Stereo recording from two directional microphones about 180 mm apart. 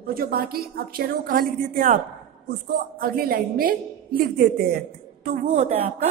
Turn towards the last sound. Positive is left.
turn(degrees=-40)  # may be behind; listen again after turning